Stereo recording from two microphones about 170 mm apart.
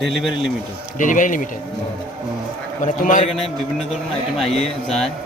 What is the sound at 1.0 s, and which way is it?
Speech, 50° left (ahead or behind).